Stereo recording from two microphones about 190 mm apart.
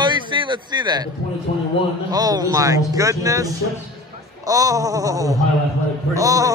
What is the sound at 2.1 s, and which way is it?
Speech, 20° right (ahead or behind).